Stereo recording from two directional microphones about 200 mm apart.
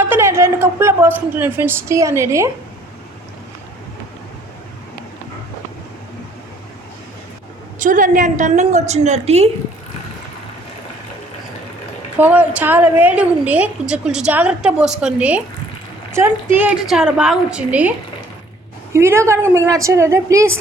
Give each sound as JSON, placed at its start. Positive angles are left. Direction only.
{"t": 0.0, "sound": "a woman's voice", "side_deg": -10}
{"t": 7.8, "sound": "a woman's voice", "side_deg": -40}
{"t": 12.1, "sound": "a woman's voice", "side_deg": -10}
{"t": 18.9, "sound": "a woman's voice", "side_deg": -15}